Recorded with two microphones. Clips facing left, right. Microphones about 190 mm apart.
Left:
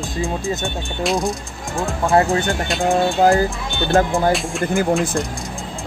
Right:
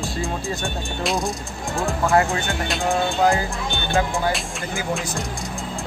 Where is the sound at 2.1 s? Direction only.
35° left (ahead or behind).